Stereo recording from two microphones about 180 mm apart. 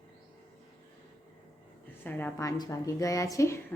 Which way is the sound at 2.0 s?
10° left (ahead or behind).